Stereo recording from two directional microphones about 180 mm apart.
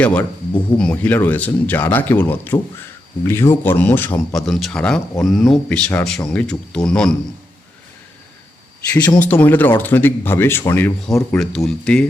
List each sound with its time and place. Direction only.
0.0 s speech: 5° left (ahead or behind)
8.9 s speech: 10° left (ahead or behind)